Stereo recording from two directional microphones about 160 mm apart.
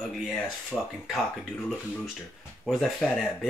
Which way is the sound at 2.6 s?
Centre (ahead or behind).